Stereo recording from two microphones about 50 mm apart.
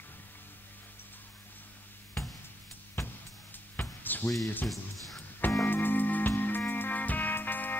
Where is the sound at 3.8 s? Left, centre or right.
Left.